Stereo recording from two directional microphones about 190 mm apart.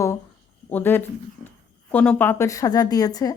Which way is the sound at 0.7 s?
10° left (ahead or behind).